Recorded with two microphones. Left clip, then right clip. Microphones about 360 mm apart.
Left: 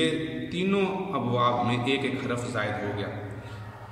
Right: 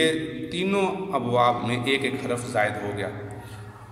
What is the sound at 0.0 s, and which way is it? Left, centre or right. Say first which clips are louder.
A man's voice: right 4 dB; centre.